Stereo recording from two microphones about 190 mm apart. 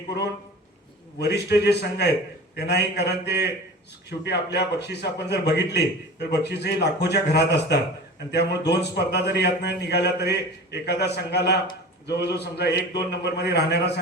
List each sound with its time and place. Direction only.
1.2 s a man's voice: 60° left (ahead or behind)
4.5 s a man's voice: 60° left (ahead or behind)